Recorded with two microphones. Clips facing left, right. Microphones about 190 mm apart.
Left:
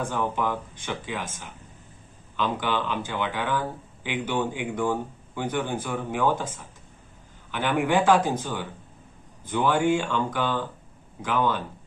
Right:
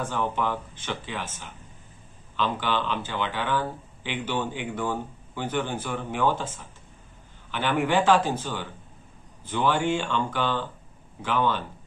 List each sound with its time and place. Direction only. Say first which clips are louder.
0.0 s a man's voice: left 1 dB; 10° left (ahead or behind)